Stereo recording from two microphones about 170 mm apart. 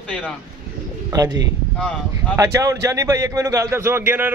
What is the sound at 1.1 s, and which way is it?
A man's voice, 20° right (ahead or behind).